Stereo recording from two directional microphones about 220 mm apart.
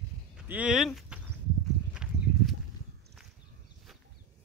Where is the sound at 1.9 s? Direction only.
5° right (ahead or behind).